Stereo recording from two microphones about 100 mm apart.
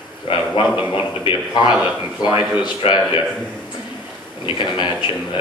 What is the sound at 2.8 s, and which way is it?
Speech, 75° left (ahead or behind).